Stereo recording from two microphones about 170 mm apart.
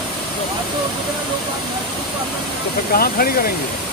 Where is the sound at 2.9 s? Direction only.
60° left (ahead or behind).